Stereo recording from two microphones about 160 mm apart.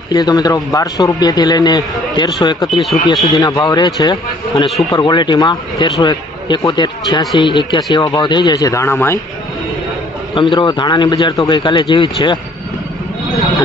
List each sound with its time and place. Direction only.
0.1 s a man's voice: 25° left (ahead or behind)
10.3 s speech: 30° left (ahead or behind)